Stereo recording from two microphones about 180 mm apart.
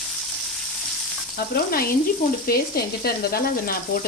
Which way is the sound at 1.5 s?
55° left (ahead or behind).